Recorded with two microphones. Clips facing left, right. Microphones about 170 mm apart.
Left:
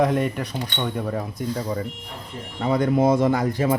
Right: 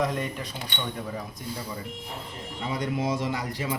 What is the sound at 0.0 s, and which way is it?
Speech, 60° left (ahead or behind).